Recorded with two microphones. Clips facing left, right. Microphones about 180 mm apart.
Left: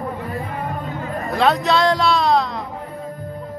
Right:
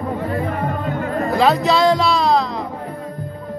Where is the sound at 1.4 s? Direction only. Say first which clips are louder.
Right 1 dB; centre (ahead or behind).